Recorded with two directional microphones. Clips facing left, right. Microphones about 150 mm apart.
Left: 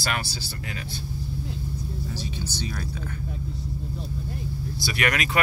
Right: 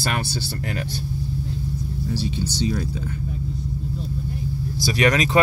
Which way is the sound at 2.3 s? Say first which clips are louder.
Right 8 dB; 25° right (ahead or behind).